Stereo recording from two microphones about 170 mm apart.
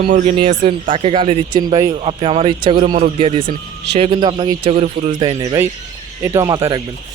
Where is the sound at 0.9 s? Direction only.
30° right (ahead or behind).